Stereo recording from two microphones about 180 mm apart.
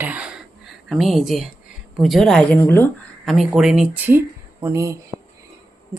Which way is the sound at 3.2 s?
Centre (ahead or behind).